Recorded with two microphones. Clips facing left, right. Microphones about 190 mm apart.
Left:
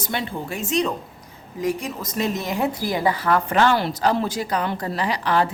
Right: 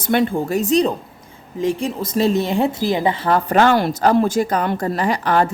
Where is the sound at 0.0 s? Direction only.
55° right (ahead or behind).